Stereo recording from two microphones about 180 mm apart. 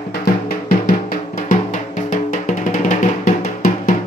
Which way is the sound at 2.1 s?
45° left (ahead or behind).